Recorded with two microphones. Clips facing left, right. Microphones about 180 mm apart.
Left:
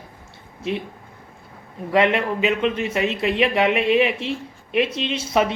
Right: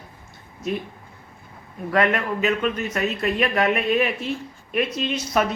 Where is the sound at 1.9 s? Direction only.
25° left (ahead or behind).